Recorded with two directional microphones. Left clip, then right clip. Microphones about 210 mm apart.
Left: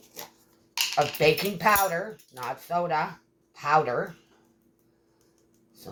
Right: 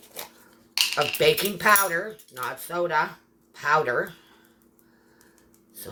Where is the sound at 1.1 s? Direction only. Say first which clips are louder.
Right 2 dB; 35° right (ahead or behind).